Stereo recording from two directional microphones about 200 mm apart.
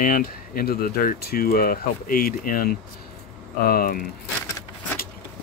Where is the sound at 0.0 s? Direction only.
45° left (ahead or behind).